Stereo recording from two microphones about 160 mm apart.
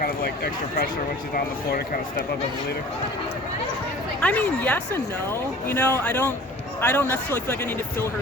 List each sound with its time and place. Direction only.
0.0 s speech: 75° left (ahead or behind)
4.2 s speech: 10° left (ahead or behind)